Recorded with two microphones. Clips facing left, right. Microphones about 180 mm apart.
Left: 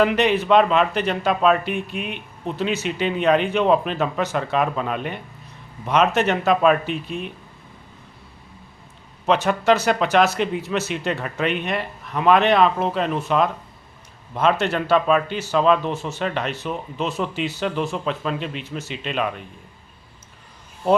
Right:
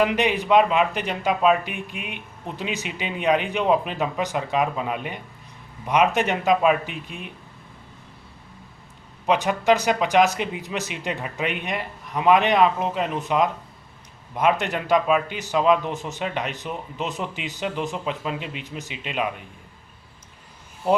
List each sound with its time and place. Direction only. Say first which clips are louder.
0.0 s speech: left 3 dB; 15° right (ahead or behind)
9.2 s speech: left 2 dB; 15° right (ahead or behind)